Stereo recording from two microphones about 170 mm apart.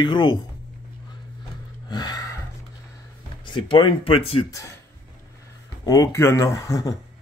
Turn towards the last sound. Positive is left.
turn(degrees=20)  # may be behind; listen again after turning